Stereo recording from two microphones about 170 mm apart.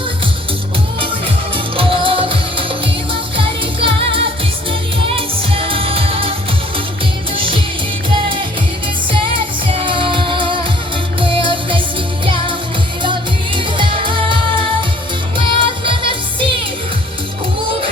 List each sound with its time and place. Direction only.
1.5 s music: 30° right (ahead or behind)
7.3 s music: 30° right (ahead or behind)
9.1 s music: 30° right (ahead or behind)
13.7 s music: 30° right (ahead or behind)
15.4 s music: 30° right (ahead or behind)